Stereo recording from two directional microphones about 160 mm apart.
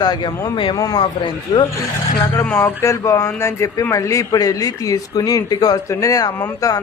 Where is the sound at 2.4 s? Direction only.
15° left (ahead or behind).